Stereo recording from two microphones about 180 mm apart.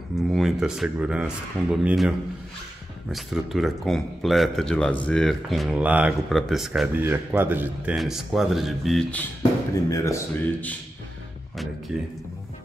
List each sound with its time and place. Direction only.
0.3 s speech: centre (ahead or behind)
9.8 s speech: 20° left (ahead or behind)
11.9 s speech: centre (ahead or behind)